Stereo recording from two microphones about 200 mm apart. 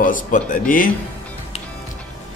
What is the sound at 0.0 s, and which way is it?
Speech, 40° left (ahead or behind).